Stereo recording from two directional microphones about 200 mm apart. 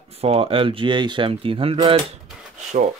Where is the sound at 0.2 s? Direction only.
30° right (ahead or behind).